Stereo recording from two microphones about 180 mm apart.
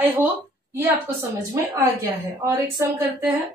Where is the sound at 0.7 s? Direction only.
15° right (ahead or behind).